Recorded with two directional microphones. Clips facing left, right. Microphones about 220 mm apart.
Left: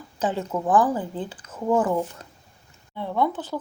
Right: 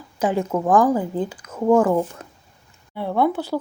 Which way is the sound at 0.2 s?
10° right (ahead or behind).